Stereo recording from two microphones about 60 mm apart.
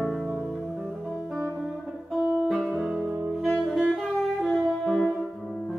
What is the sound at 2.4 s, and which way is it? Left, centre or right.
Music, centre.